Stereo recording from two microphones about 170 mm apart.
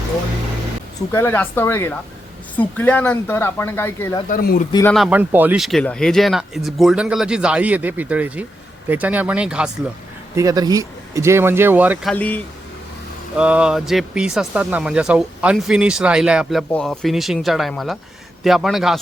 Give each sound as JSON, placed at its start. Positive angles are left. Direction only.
{"t": 1.1, "sound": "speech", "side_deg": 10}
{"t": 4.3, "sound": "speech", "side_deg": 55}
{"t": 4.9, "sound": "speech", "side_deg": -10}
{"t": 10.3, "sound": "speech", "side_deg": -20}
{"t": 12.1, "sound": "speech", "side_deg": 10}
{"t": 13.3, "sound": "speech", "side_deg": -5}